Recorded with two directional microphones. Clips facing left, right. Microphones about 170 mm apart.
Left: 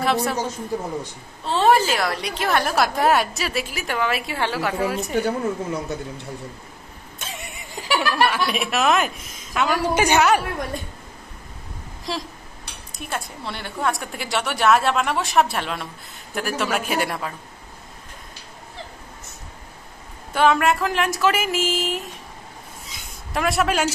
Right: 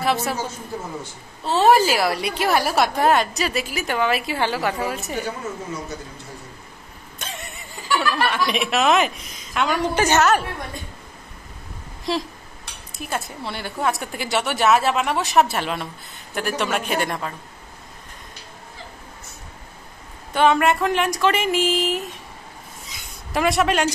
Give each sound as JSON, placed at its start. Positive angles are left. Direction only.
{"t": 0.0, "sound": "a man's voice", "side_deg": 0}
{"t": 1.4, "sound": "a woman's voice", "side_deg": -5}
{"t": 5.1, "sound": "a woman's voice", "side_deg": 55}
{"t": 7.2, "sound": "a sound", "side_deg": 10}
{"t": 8.5, "sound": "a woman's voice", "side_deg": 0}
{"t": 12.1, "sound": "a woman's voice", "side_deg": 0}
{"t": 20.3, "sound": "a woman's voice", "side_deg": 0}
{"t": 23.3, "sound": "a woman's voice", "side_deg": 0}